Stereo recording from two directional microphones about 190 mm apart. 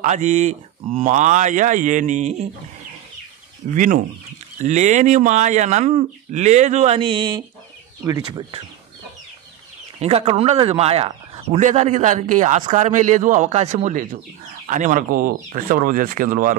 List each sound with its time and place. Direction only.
0.0 s speech: 40° right (ahead or behind)
3.7 s speech: 45° right (ahead or behind); by 8.5 s 20° right (ahead or behind)
9.9 s speech: 30° right (ahead or behind)